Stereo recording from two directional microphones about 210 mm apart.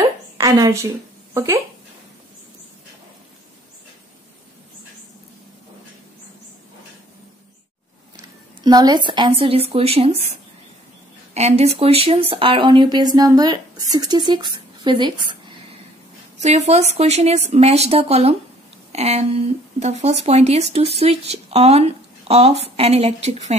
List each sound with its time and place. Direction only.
0.4 s a woman's voice: 15° right (ahead or behind)
8.6 s speech: 20° right (ahead or behind)
11.3 s speech: 30° right (ahead or behind)
16.3 s speech: 35° right (ahead or behind)